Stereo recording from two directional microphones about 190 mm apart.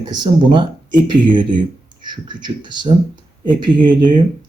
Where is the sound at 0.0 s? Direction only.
25° right (ahead or behind).